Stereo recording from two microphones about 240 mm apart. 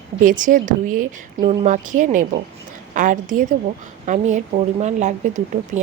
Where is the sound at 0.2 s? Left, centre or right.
Right.